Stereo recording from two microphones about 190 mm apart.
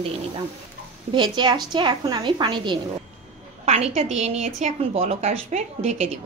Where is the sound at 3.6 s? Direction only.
35° right (ahead or behind).